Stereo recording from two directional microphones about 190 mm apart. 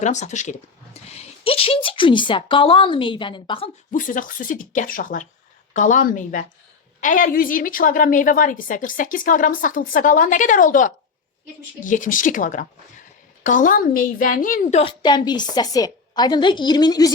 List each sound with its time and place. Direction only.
0.0 s a woman's voice: 40° left (ahead or behind)
3.9 s a woman's voice: 45° left (ahead or behind); by 17.1 s 20° left (ahead or behind)